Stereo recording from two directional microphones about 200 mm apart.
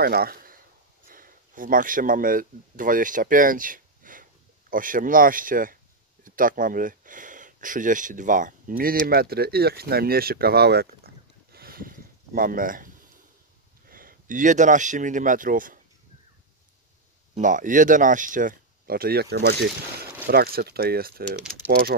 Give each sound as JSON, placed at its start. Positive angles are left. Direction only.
{"t": 0.0, "sound": "speech", "side_deg": -50}
{"t": 17.3, "sound": "speech", "side_deg": -40}